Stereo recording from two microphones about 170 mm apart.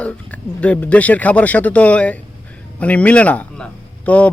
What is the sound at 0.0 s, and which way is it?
A man's voice, 10° left (ahead or behind).